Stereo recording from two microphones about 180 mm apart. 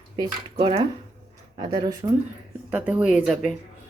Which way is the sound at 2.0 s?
25° right (ahead or behind).